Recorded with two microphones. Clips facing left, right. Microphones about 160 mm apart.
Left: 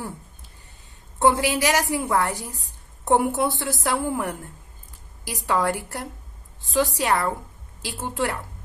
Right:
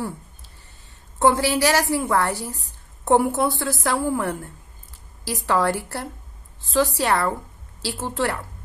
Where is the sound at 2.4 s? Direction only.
40° right (ahead or behind).